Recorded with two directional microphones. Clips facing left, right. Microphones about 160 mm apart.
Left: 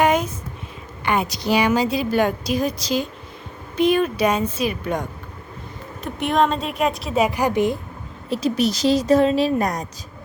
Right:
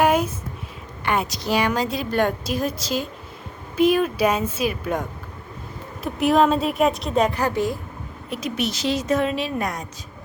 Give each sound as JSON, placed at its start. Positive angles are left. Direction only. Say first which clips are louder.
{"t": 0.0, "sound": "a sound", "louder": "even", "side_deg": -5}
{"t": 1.0, "sound": "speech", "louder": "left 2 dB", "side_deg": 0}
{"t": 8.3, "sound": "speech", "louder": "left 6 dB", "side_deg": 35}